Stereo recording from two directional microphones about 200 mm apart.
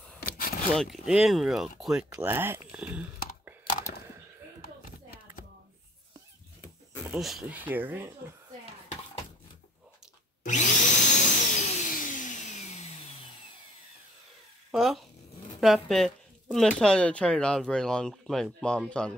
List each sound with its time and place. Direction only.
0.2 s a sound: 45° left (ahead or behind)
0.7 s speech: centre (ahead or behind)
2.0 s speech: 15° right (ahead or behind)
7.1 s speech: centre (ahead or behind)
10.4 s vacuum cleaner: 40° left (ahead or behind)
14.7 s speech: centre (ahead or behind)